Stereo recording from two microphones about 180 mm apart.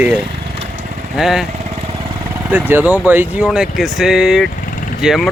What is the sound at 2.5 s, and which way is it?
Speech, 10° right (ahead or behind).